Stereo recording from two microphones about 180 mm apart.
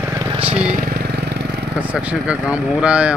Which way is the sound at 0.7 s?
50° right (ahead or behind).